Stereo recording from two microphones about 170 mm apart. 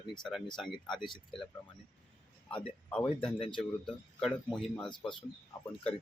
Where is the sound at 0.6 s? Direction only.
Centre (ahead or behind).